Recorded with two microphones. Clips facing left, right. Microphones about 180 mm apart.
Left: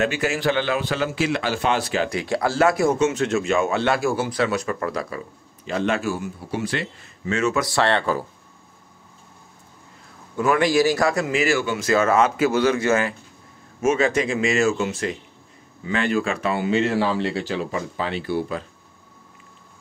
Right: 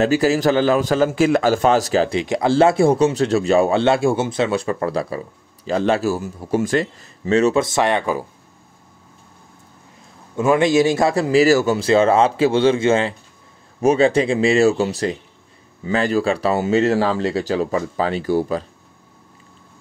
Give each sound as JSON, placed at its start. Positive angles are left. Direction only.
{"t": 0.0, "sound": "speech", "side_deg": -35}
{"t": 2.0, "sound": "speech", "side_deg": -20}
{"t": 7.6, "sound": "speech", "side_deg": -15}
{"t": 10.3, "sound": "speech", "side_deg": -25}